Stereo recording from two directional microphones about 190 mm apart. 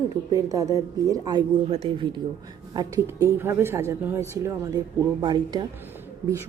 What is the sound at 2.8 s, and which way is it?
Speech, 15° right (ahead or behind).